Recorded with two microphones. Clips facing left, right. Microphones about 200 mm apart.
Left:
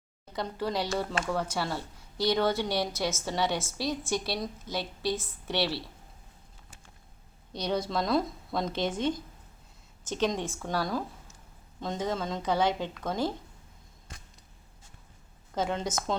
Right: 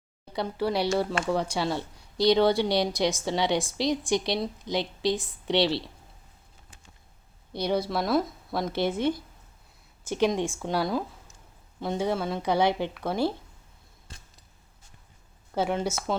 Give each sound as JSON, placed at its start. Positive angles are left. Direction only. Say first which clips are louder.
{"t": 0.3, "sound": "a woman's voice", "louder": "right 4 dB", "side_deg": -10}
{"t": 4.7, "sound": "a woman's voice", "louder": "right 6 dB", "side_deg": 10}
{"t": 5.1, "sound": "a woman's voice", "louder": "right 6 dB", "side_deg": -15}
{"t": 7.5, "sound": "a woman's voice", "louder": "right 3 dB", "side_deg": -10}
{"t": 15.5, "sound": "a woman's voice", "louder": "right 3 dB", "side_deg": -10}